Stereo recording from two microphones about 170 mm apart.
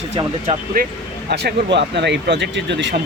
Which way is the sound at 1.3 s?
75° right (ahead or behind).